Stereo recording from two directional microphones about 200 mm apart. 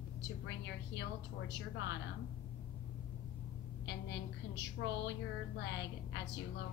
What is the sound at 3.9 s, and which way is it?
Speech, 60° left (ahead or behind).